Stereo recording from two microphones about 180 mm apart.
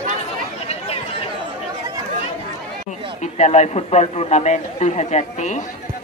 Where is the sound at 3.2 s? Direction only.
40° left (ahead or behind).